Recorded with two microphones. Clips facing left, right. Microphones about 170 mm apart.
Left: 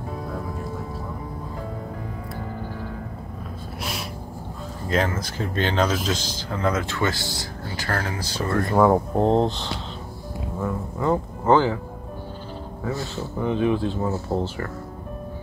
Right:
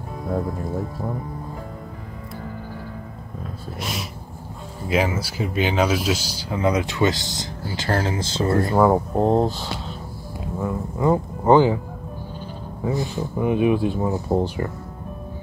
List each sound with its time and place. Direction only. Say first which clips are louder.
4.8 s speech: right 2 dB; 10° right (ahead or behind); by 8.7 s 25° right (ahead or behind)
8.7 s speech: left 2 dB; 5° right (ahead or behind)
12.8 s speech: right 5 dB; 15° right (ahead or behind)